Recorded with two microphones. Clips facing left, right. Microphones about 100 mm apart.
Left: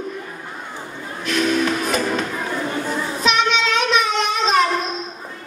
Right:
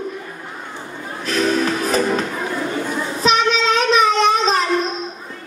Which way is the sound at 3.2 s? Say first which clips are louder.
Right 3 dB; 35° right (ahead or behind).